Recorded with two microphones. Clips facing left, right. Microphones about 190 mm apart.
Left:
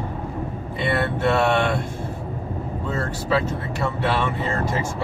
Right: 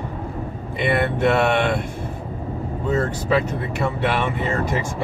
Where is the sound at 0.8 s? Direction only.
15° right (ahead or behind).